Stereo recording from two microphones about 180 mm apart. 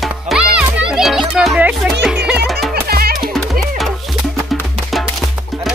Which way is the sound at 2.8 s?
55° right (ahead or behind).